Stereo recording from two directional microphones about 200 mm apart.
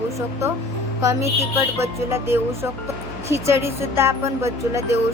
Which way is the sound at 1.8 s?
15° right (ahead or behind).